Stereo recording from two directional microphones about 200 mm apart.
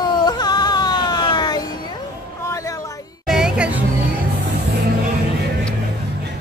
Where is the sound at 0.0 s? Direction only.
20° left (ahead or behind).